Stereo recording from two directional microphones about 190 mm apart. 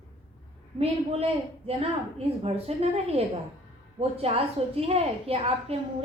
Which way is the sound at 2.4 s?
30° right (ahead or behind).